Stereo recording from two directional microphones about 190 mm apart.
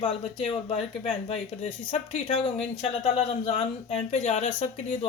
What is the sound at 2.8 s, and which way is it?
Speech, 35° left (ahead or behind).